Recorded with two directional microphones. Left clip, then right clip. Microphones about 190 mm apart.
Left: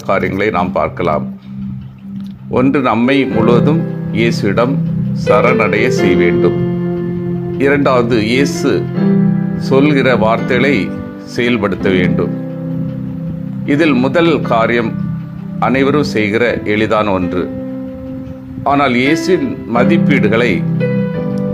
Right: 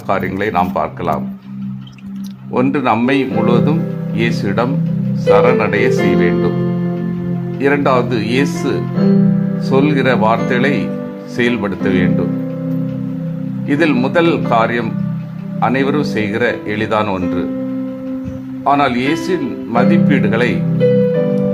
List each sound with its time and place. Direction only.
0.1 s speech: 15° left (ahead or behind)
2.7 s speech: 10° left (ahead or behind)
7.6 s speech: 15° left (ahead or behind)
9.6 s speech: 15° left (ahead or behind)
13.7 s speech: 15° left (ahead or behind)
18.6 s speech: 15° left (ahead or behind)
20.7 s music: 5° right (ahead or behind)